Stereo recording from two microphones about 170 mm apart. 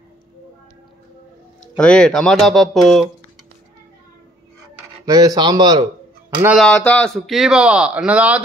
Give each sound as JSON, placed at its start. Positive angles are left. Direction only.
{"t": 1.8, "sound": "speech", "side_deg": 5}
{"t": 5.0, "sound": "speech", "side_deg": -20}
{"t": 6.6, "sound": "speech", "side_deg": 5}